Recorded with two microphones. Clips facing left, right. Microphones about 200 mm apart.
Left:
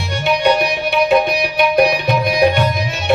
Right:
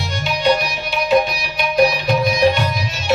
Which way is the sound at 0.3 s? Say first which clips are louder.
Left 3 dB; 60° left (ahead or behind).